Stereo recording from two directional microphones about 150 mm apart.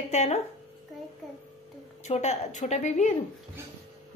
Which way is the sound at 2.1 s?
50° left (ahead or behind).